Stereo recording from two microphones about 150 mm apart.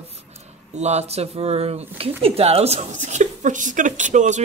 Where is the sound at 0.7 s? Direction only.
45° right (ahead or behind).